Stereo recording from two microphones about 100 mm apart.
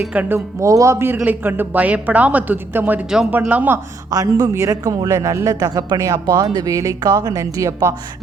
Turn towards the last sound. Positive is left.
turn(degrees=-30)  # may be behind; listen again after turning